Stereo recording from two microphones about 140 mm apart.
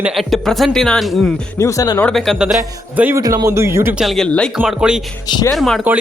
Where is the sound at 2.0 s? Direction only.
5° left (ahead or behind).